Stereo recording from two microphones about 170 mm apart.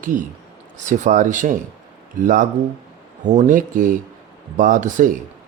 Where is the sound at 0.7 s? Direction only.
45° right (ahead or behind).